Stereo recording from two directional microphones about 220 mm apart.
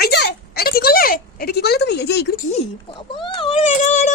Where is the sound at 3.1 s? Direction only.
25° left (ahead or behind).